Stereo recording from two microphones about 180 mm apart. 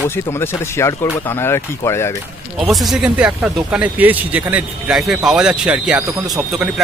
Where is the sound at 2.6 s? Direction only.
Centre (ahead or behind).